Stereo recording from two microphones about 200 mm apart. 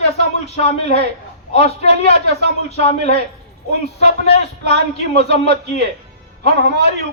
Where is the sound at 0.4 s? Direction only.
30° left (ahead or behind).